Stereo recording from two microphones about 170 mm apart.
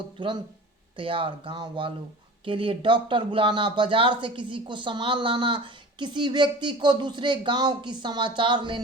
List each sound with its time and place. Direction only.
0.9 s speech: 30° right (ahead or behind)